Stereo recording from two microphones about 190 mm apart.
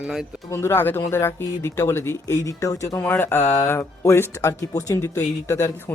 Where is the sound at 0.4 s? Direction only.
15° left (ahead or behind).